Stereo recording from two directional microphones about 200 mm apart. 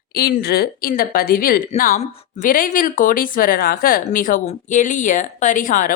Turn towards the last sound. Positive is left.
turn(degrees=40)  # may be behind; listen again after turning